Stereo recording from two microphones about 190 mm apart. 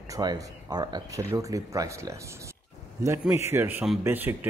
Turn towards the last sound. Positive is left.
turn(degrees=-10)  # may be behind; listen again after turning